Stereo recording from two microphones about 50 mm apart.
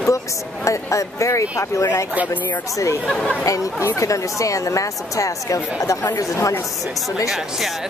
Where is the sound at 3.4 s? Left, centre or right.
Left.